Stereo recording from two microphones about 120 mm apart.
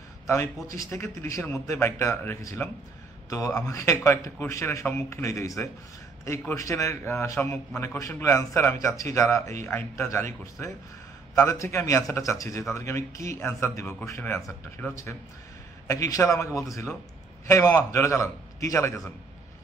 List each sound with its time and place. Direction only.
0.8 s a man's voice: 25° left (ahead or behind)
6.5 s a man's voice: 25° left (ahead or behind)